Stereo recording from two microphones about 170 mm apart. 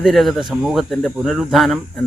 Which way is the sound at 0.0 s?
Centre (ahead or behind).